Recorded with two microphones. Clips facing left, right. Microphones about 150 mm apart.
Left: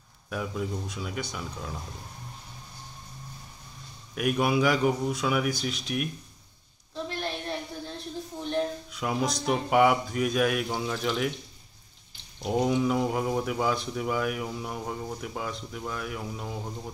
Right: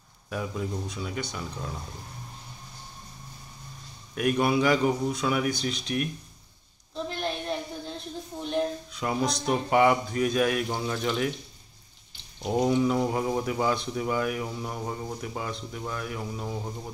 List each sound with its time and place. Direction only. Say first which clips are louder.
0.3 s speech: even; centre (ahead or behind)
4.1 s speech: right 1 dB; 5° left (ahead or behind)
7.1 s a sound: right 2 dB; 20° right (ahead or behind)
8.9 s speech: even; 5° left (ahead or behind)
12.4 s speech: right 1 dB; 5° left (ahead or behind)